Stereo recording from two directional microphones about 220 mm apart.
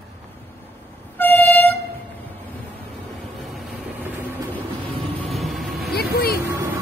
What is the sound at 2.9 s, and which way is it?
Vehicle, centre (ahead or behind).